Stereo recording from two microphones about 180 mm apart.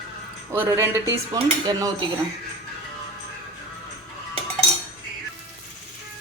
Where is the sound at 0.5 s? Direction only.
15° right (ahead or behind).